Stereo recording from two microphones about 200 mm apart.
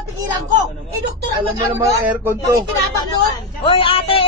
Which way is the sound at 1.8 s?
10° right (ahead or behind).